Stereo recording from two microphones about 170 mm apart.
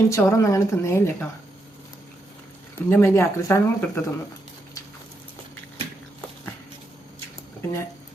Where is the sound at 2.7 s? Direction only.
15° left (ahead or behind).